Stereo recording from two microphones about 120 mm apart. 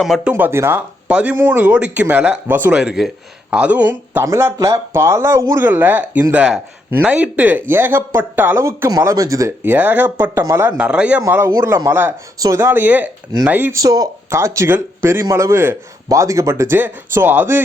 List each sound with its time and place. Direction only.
0.0 s speech: centre (ahead or behind)
0.3 s speech: 20° right (ahead or behind)
2.7 s speech: 5° right (ahead or behind); by 9.5 s 30° right (ahead or behind)
9.6 s speech: 15° right (ahead or behind)
11.3 s speech: 20° right (ahead or behind)
13.7 s speech: 30° right (ahead or behind)